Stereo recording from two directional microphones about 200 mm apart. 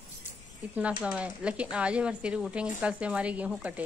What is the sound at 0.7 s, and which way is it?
Speech, 5° right (ahead or behind).